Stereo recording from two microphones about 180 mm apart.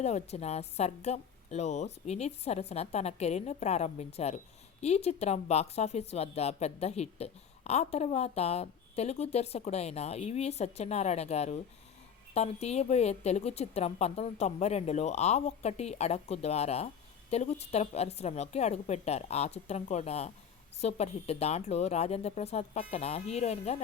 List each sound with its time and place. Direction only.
0.0 s speech: 35° left (ahead or behind)